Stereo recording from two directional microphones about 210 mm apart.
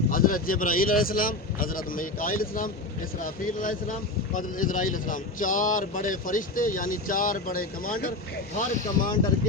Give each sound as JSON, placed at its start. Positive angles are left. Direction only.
{"t": 0.1, "sound": "speech", "side_deg": 40}